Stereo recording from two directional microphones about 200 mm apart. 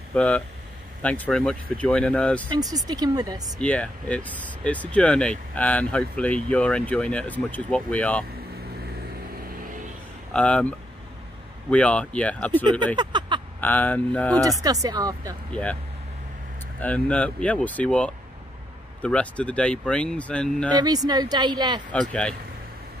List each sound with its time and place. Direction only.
0.1 s speech: 5° left (ahead or behind)
2.5 s speech: 20° right (ahead or behind)
3.6 s speech: 5° left (ahead or behind)
10.3 s speech: 5° left (ahead or behind)
11.7 s speech: 5° left (ahead or behind)
12.9 s speech: 25° right (ahead or behind)
13.6 s speech: 10° left (ahead or behind)
14.6 s speech: 20° right (ahead or behind)
15.5 s speech: 5° left (ahead or behind)
16.8 s speech: 5° left (ahead or behind)
20.7 s speech: 20° right (ahead or behind)